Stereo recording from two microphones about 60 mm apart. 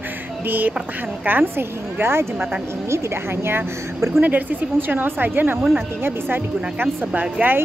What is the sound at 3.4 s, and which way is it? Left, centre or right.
Speech, right.